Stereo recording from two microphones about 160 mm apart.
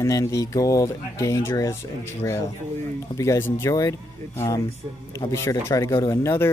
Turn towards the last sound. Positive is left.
turn(degrees=15)  # may be behind; listen again after turning